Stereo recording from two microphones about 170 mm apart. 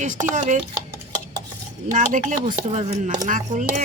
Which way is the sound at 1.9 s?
50° right (ahead or behind).